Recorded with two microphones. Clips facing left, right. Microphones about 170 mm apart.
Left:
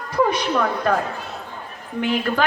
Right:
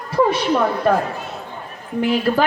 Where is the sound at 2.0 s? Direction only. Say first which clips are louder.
Right 3 dB; 30° right (ahead or behind).